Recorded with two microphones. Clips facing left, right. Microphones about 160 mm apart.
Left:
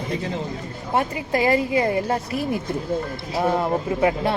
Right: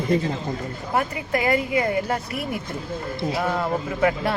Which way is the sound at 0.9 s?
30° left (ahead or behind).